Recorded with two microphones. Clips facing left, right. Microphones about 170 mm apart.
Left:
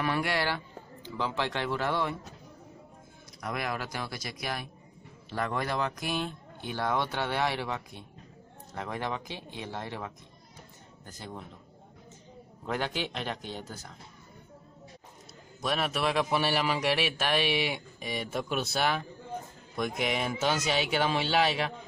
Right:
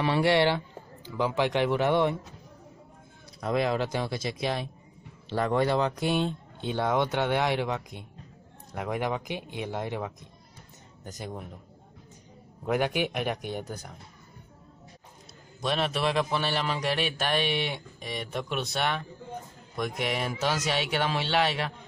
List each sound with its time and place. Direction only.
0.0 s speech: 25° right (ahead or behind)
3.3 s speech: 25° right (ahead or behind)
12.6 s speech: 15° right (ahead or behind)
15.6 s a man's voice: 5° left (ahead or behind)